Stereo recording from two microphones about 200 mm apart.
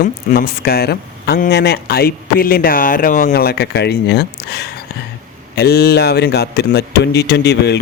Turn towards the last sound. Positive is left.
turn(degrees=55)  # may be behind; listen again after turning